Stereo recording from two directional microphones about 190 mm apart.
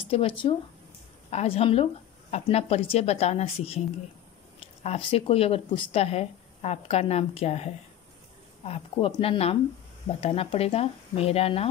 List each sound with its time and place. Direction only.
0.0 s speech: 30° left (ahead or behind)